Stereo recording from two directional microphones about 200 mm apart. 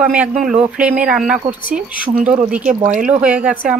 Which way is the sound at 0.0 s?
5° right (ahead or behind).